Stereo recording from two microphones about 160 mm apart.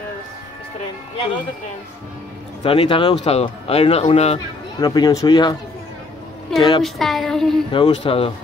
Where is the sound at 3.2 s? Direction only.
40° left (ahead or behind).